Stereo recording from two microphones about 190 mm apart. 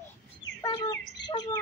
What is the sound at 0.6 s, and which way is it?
Bird, 20° left (ahead or behind).